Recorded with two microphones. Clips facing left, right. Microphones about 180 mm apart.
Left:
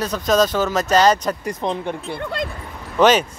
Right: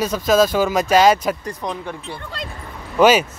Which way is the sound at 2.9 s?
10° right (ahead or behind).